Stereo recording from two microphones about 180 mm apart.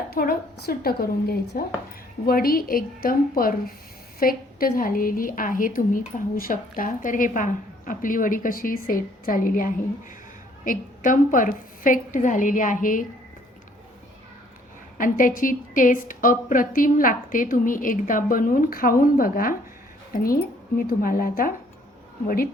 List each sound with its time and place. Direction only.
0.1 s a woman's voice: 60° left (ahead or behind)
14.9 s a woman's voice: 50° left (ahead or behind)